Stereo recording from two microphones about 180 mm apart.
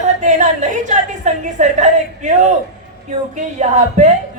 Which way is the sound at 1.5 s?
40° right (ahead or behind).